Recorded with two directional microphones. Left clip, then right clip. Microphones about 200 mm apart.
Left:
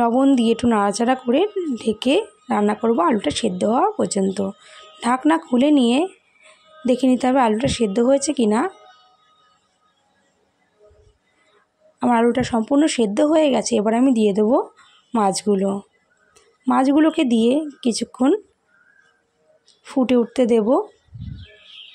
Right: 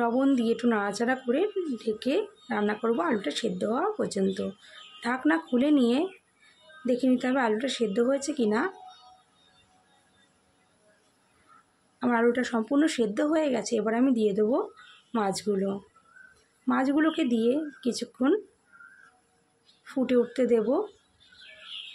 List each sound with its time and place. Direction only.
0.0 s speech: 30° left (ahead or behind)
12.0 s speech: 30° left (ahead or behind)
19.8 s speech: 30° left (ahead or behind)